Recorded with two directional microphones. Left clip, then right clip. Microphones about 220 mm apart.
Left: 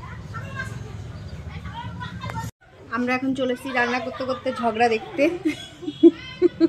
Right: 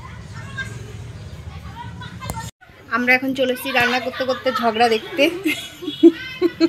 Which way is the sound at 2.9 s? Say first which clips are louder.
Right 7 dB; 10° right (ahead or behind).